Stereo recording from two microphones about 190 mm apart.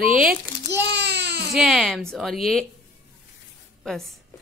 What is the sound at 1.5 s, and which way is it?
Speech, centre (ahead or behind).